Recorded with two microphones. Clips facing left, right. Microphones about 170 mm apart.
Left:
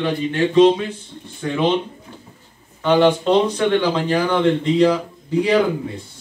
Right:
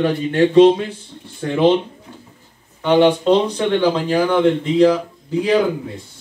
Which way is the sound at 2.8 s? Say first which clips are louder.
Right 1 dB; 15° right (ahead or behind).